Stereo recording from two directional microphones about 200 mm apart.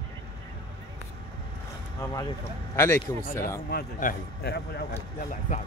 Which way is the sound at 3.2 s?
45° left (ahead or behind).